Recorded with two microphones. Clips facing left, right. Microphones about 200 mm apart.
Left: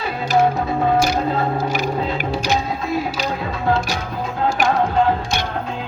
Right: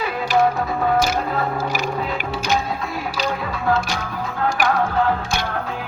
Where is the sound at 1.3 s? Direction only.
25° left (ahead or behind).